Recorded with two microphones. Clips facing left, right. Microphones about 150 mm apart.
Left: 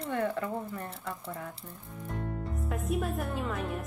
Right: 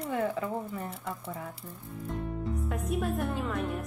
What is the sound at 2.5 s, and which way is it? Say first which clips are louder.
Speech: left 1 dB; centre (ahead or behind).